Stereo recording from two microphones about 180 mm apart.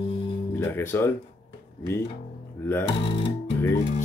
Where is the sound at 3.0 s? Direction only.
30° left (ahead or behind).